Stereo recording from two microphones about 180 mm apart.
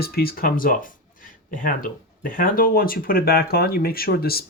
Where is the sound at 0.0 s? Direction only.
55° left (ahead or behind).